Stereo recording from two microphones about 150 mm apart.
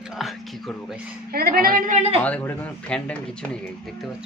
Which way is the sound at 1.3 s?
90° right.